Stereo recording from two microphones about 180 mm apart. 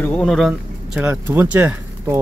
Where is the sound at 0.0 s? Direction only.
5° left (ahead or behind).